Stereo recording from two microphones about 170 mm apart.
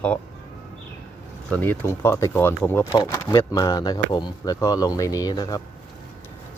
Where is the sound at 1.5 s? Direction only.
10° left (ahead or behind).